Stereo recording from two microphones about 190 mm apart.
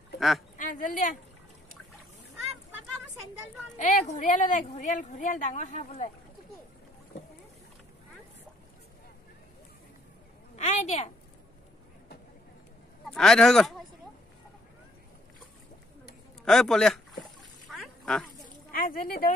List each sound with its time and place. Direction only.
0.6 s speech: 45° left (ahead or behind)
3.7 s a woman's voice: 40° left (ahead or behind)
10.5 s a woman's voice: 35° left (ahead or behind)
13.1 s speech: 5° left (ahead or behind)
16.4 s speech: 5° left (ahead or behind)
17.2 s splash: centre (ahead or behind)
18.7 s speech: 45° left (ahead or behind)